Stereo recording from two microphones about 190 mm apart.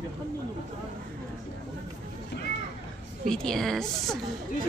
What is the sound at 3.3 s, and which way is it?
Speech, 5° left (ahead or behind).